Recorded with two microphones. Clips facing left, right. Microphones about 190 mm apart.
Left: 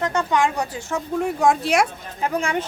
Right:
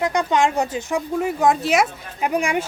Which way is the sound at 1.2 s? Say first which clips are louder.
Even; centre (ahead or behind).